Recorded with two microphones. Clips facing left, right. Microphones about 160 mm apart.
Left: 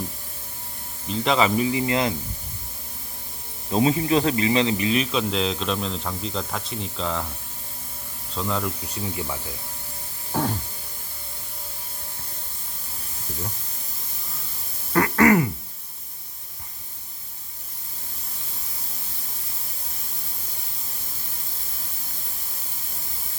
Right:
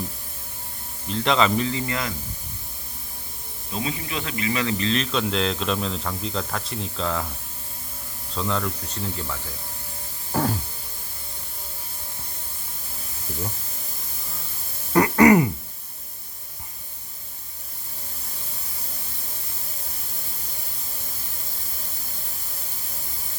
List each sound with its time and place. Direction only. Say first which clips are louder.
1.0 s speech: even; 5° left (ahead or behind); by 2.1 s 25° left (ahead or behind)
3.7 s speech: left 10 dB; 35° left (ahead or behind)
4.8 s speech: left 1 dB; 10° left (ahead or behind)
8.3 s speech: even; 5° left (ahead or behind)
10.3 s a sound: right 1 dB; centre (ahead or behind)
14.9 s a sound: right 3 dB; 20° right (ahead or behind)